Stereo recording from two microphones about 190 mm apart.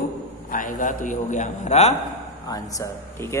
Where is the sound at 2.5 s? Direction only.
15° left (ahead or behind).